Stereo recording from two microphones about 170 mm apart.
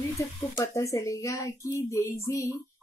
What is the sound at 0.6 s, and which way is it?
Speech, 20° left (ahead or behind).